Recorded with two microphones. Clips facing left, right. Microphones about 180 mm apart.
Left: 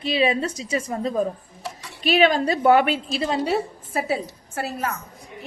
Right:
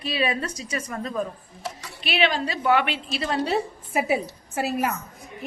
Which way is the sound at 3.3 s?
10° left (ahead or behind).